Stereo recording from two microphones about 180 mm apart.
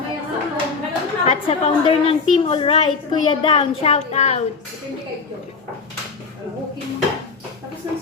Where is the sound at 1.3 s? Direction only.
35° left (ahead or behind).